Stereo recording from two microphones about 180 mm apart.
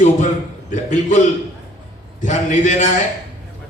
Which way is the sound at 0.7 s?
45° left (ahead or behind).